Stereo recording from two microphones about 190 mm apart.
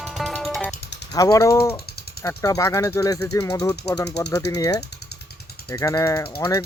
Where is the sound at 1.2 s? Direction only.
15° left (ahead or behind).